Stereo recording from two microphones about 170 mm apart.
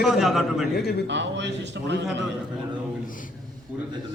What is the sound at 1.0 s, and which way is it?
Speech, 90° right.